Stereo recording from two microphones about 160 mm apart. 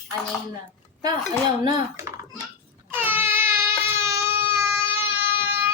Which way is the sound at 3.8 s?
15° right (ahead or behind).